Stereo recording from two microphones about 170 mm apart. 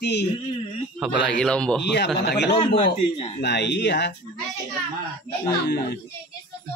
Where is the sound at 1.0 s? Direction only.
Centre (ahead or behind).